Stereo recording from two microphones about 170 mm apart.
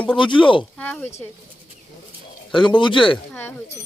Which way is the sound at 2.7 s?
30° left (ahead or behind).